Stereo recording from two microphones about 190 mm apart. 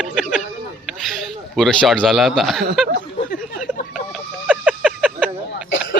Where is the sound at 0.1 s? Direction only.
Centre (ahead or behind).